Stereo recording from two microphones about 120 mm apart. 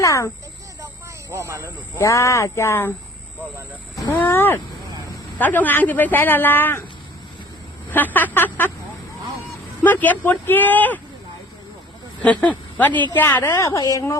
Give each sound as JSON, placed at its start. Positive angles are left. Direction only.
{"t": 0.0, "sound": "speech", "side_deg": 25}
{"t": 1.3, "sound": "speech", "side_deg": -25}
{"t": 2.0, "sound": "a woman's voice", "side_deg": 25}
{"t": 4.1, "sound": "speech", "side_deg": 15}
{"t": 7.9, "sound": "speech", "side_deg": 15}
{"t": 9.8, "sound": "speech", "side_deg": 15}
{"t": 12.2, "sound": "a woman's voice", "side_deg": 10}